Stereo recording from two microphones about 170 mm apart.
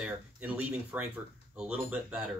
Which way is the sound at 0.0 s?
10° right (ahead or behind).